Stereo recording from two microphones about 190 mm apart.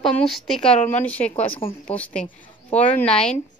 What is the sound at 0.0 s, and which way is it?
A woman's voice, centre (ahead or behind).